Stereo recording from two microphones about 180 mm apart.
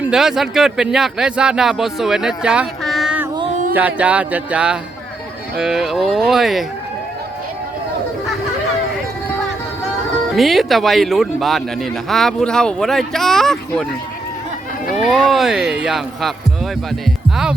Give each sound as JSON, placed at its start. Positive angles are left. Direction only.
{"t": 0.0, "sound": "speech", "side_deg": -5}
{"t": 3.5, "sound": "a sound", "side_deg": -45}
{"t": 3.8, "sound": "music", "side_deg": -10}
{"t": 5.5, "sound": "speech", "side_deg": -5}
{"t": 10.3, "sound": "speech", "side_deg": 0}
{"t": 15.0, "sound": "speech", "side_deg": 0}